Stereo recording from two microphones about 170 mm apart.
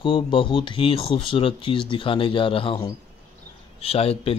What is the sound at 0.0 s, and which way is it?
Speech, 30° left (ahead or behind).